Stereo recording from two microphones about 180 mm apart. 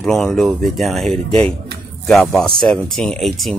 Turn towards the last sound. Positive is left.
turn(degrees=0)  # may be behind; listen again after turning